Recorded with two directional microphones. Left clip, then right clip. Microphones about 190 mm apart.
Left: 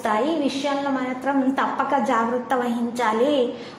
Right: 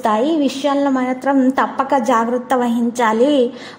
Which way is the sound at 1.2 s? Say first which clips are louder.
Right 6 dB; 30° right (ahead or behind).